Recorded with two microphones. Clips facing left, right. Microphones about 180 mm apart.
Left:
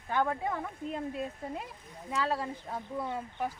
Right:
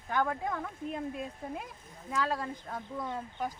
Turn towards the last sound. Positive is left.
turn(degrees=10)  # may be behind; listen again after turning